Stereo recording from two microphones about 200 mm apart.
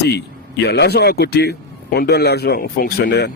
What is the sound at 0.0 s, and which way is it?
A man's voice, 55° left (ahead or behind).